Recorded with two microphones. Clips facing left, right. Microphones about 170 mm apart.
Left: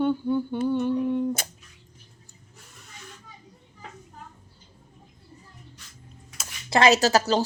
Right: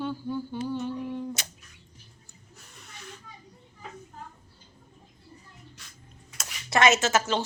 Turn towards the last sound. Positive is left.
turn(degrees=35)  # may be behind; listen again after turning